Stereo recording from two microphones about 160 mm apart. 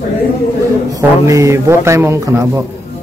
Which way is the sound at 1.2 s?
20° right (ahead or behind).